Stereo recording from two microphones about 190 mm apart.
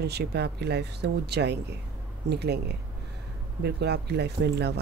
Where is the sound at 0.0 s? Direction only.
60° right (ahead or behind).